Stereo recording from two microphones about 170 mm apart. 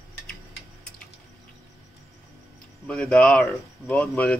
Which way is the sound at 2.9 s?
5° left (ahead or behind).